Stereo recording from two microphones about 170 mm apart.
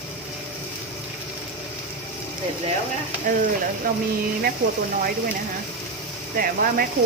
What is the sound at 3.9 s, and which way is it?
Speech, 55° right (ahead or behind).